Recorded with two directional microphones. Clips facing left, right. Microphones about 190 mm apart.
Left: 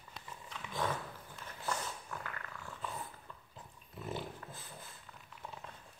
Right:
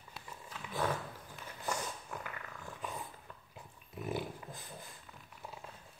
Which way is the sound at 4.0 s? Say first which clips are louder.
Right 3 dB; 15° right (ahead or behind).